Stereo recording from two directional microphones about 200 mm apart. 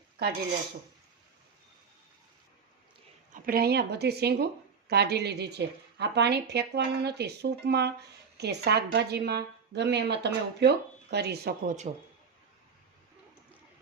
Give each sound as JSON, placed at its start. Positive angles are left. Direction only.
{"t": 3.3, "sound": "a woman's voice", "side_deg": -45}